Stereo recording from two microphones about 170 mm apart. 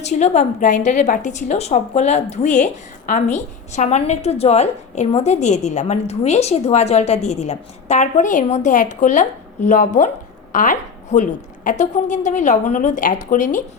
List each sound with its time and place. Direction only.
0.0 s a woman's voice: 40° left (ahead or behind)